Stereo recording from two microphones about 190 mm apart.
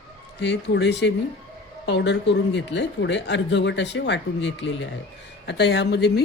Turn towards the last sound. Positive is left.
turn(degrees=60)  # may be behind; listen again after turning